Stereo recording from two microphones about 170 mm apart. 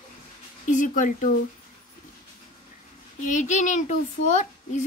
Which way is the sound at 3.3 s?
45° left (ahead or behind).